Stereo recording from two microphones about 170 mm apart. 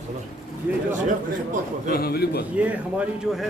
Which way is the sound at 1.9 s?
65° left (ahead or behind).